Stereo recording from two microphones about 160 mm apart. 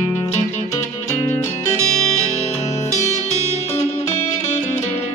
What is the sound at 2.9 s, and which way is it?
Music, 45° left (ahead or behind).